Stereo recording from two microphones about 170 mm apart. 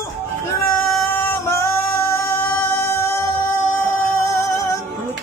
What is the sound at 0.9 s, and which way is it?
Singing, 15° left (ahead or behind).